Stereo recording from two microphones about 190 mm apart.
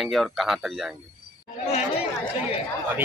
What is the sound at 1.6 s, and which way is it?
Speech, 30° left (ahead or behind).